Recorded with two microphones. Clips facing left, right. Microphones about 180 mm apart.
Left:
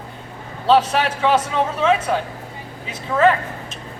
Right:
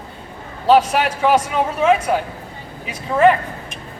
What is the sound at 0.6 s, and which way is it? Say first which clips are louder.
Speech: right 2 dB; 10° right (ahead or behind).